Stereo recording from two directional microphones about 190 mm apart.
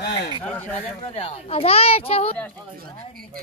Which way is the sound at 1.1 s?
30° left (ahead or behind).